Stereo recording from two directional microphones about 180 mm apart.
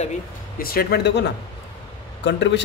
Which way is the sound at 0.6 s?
55° left (ahead or behind).